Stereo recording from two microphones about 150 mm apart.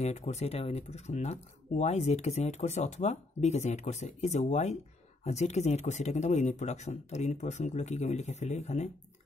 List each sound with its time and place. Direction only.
0.0 s speech: 50° left (ahead or behind)